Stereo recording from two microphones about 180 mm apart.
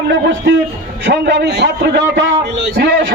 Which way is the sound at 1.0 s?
75° right (ahead or behind).